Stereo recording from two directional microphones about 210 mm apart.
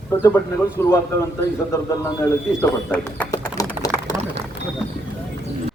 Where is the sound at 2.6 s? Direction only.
5° left (ahead or behind).